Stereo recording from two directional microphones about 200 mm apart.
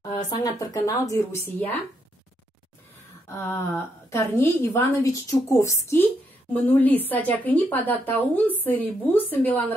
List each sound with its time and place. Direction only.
0.1 s speech: 20° left (ahead or behind)
3.3 s speech: 10° left (ahead or behind)